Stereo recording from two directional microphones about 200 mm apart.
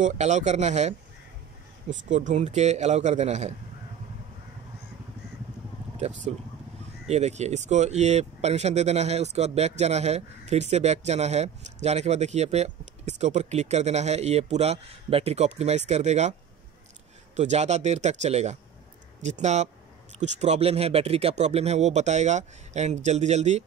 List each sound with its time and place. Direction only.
0.0 s speech: 35° right (ahead or behind)
5.9 s speech: 35° right (ahead or behind)
17.4 s speech: 35° right (ahead or behind)